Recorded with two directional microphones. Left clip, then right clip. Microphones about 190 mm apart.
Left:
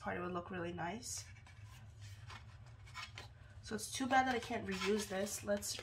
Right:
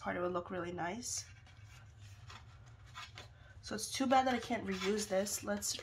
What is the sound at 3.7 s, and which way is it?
Speech, 45° right (ahead or behind).